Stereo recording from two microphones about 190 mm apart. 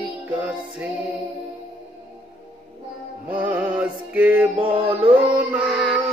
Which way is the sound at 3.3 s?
10° right (ahead or behind).